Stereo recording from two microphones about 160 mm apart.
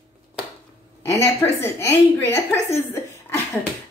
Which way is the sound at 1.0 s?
15° left (ahead or behind).